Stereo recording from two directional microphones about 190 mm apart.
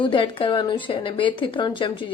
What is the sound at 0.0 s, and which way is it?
A woman's voice, 25° left (ahead or behind).